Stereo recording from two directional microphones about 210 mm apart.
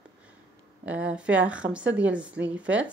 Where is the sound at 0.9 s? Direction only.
5° right (ahead or behind).